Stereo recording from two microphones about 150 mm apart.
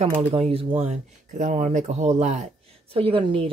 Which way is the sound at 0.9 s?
55° right (ahead or behind).